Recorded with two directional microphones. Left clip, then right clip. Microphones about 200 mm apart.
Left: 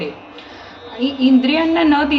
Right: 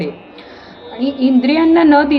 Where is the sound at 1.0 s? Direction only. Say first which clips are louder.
Right 1 dB; 20° right (ahead or behind).